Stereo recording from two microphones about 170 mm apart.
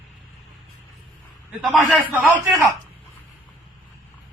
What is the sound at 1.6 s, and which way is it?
Speech, centre (ahead or behind).